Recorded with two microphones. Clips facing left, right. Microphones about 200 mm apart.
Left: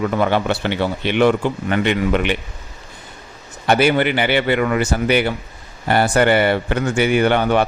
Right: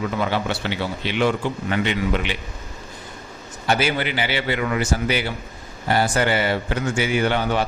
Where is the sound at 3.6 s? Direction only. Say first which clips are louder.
Left 6 dB; 60° left (ahead or behind).